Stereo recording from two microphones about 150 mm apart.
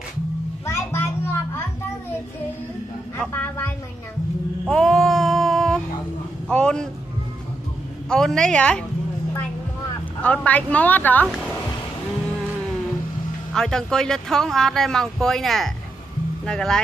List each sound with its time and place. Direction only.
0.7 s music: 20° left (ahead or behind)
3.2 s a woman's voice: 10° left (ahead or behind)
4.6 s a sound: centre (ahead or behind)
6.5 s vehicle: 5° left (ahead or behind)
8.1 s a woman's voice: 5° left (ahead or behind)
10.2 s a woman's voice: 10° left (ahead or behind)
13.5 s speech: 5° left (ahead or behind)